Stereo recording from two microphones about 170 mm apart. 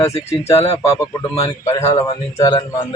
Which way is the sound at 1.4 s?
20° left (ahead or behind).